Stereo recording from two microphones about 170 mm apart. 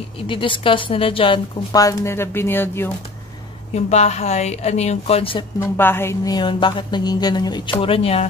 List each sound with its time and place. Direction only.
0.3 s a woman's voice: 30° left (ahead or behind); by 2.9 s 10° left (ahead or behind)
3.7 s a woman's voice: 40° left (ahead or behind)
5.6 s a woman's voice: 15° left (ahead or behind)
6.3 s a woman's voice: 30° left (ahead or behind)